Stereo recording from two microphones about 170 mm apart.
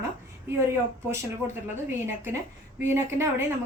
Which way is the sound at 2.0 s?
15° right (ahead or behind).